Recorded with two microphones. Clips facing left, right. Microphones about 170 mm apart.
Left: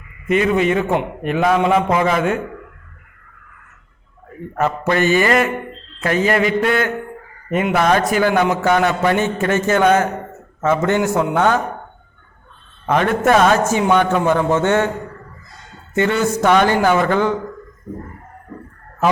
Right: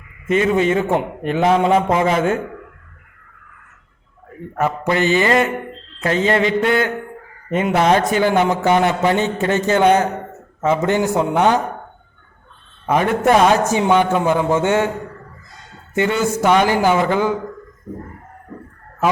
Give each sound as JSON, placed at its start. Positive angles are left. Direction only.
{"t": 0.3, "sound": "a man's voice", "side_deg": -30}
{"t": 4.5, "sound": "a man's voice", "side_deg": -15}
{"t": 12.8, "sound": "a man's voice", "side_deg": -15}
{"t": 16.0, "sound": "a man's voice", "side_deg": -15}